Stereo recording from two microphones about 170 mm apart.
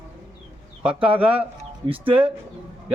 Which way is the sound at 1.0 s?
35° right (ahead or behind).